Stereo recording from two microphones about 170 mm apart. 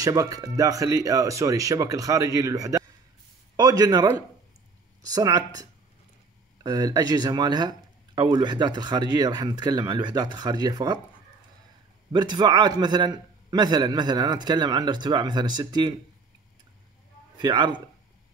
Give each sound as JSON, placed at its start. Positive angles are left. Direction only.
{"t": 0.0, "sound": "speech", "side_deg": -20}
{"t": 12.1, "sound": "speech", "side_deg": -25}
{"t": 17.4, "sound": "speech", "side_deg": -25}